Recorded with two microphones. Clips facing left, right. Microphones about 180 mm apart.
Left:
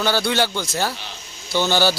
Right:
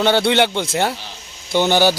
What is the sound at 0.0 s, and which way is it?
A man's voice, 25° right (ahead or behind).